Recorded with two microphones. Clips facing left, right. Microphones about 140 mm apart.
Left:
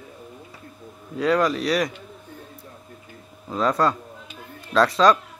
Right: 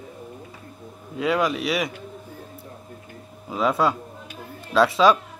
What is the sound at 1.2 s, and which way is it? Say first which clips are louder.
Speech: left 2 dB; 5° right (ahead or behind).